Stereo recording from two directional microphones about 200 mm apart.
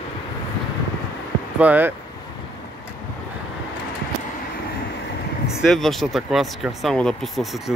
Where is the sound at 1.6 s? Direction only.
10° right (ahead or behind).